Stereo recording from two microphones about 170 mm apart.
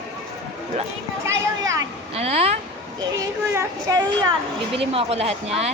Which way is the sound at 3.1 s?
20° right (ahead or behind).